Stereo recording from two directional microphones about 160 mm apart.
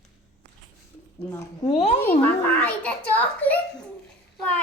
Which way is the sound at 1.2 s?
75° left (ahead or behind).